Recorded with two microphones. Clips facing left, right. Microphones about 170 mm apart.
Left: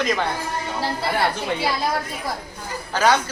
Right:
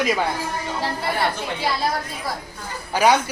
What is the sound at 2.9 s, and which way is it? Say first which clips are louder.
Speech: right 2 dB; 10° right (ahead or behind).